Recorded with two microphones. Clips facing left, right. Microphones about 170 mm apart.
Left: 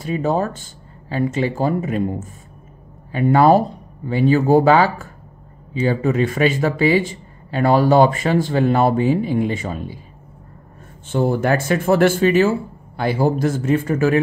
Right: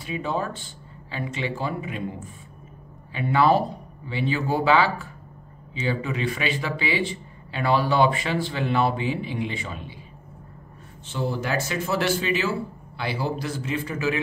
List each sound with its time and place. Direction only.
0.0 s speech: 45° left (ahead or behind)
11.1 s speech: 55° left (ahead or behind)